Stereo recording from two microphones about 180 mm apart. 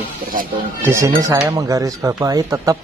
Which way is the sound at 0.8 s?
15° right (ahead or behind).